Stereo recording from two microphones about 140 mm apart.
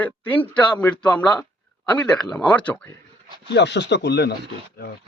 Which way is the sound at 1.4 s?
5° left (ahead or behind).